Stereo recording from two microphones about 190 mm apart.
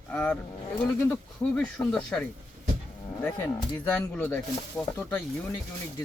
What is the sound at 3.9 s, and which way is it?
Speech, 5° left (ahead or behind).